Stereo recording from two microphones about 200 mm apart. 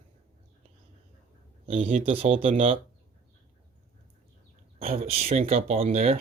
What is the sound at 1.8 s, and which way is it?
Speech, 30° right (ahead or behind).